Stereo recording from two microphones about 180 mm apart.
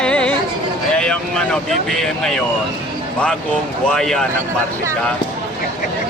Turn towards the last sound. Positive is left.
turn(degrees=5)  # may be behind; listen again after turning